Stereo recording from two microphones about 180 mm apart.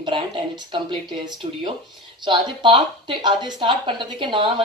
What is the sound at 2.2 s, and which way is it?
Speech, 25° right (ahead or behind).